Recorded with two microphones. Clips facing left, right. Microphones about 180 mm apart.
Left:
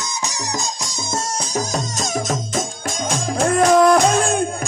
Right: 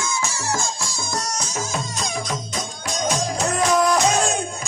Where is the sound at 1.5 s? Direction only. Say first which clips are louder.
Left 7 dB; 40° left (ahead or behind).